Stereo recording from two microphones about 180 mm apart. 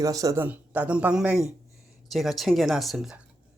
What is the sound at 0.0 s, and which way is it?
Speech, 20° right (ahead or behind).